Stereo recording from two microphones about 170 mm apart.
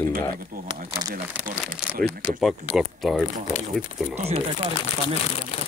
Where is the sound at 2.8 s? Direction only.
Centre (ahead or behind).